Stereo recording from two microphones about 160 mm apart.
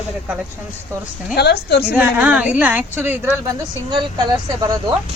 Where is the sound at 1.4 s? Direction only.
90° left.